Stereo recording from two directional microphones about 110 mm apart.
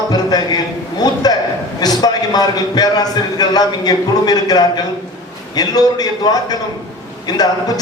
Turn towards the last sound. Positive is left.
turn(degrees=35)  # may be behind; listen again after turning